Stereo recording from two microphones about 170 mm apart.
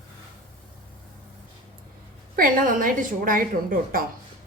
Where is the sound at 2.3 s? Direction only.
55° right (ahead or behind).